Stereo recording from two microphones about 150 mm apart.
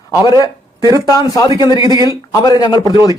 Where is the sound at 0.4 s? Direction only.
25° left (ahead or behind).